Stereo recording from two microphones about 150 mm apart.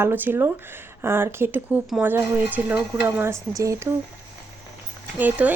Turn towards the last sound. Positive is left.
turn(degrees=-10)  # may be behind; listen again after turning